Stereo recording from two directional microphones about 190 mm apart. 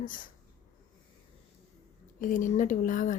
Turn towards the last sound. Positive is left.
turn(degrees=45)  # may be behind; listen again after turning